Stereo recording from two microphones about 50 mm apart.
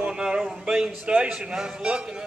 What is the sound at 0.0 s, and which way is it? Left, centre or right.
A man's voice, centre.